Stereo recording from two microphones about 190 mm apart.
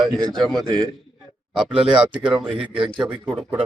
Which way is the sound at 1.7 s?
25° right (ahead or behind).